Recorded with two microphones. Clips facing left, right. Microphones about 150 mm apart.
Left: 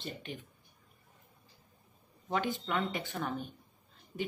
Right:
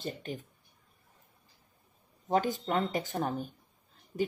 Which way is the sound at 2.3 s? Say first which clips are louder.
Right 4 dB; 40° right (ahead or behind).